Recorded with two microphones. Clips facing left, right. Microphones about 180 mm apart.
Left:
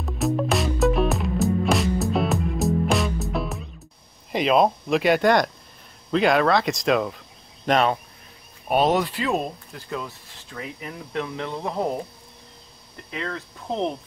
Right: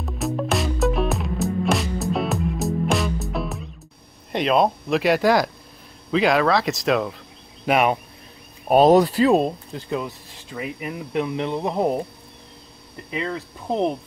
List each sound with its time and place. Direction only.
0.0 s music: centre (ahead or behind)
4.3 s speech: centre (ahead or behind)
7.6 s speech: 10° right (ahead or behind)
8.6 s speech: 40° right (ahead or behind); by 12.0 s 15° right (ahead or behind)
13.1 s speech: 15° right (ahead or behind)